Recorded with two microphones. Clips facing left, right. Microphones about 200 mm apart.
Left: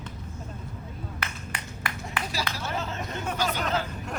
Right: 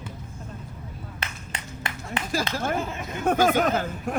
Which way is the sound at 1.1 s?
25° right (ahead or behind).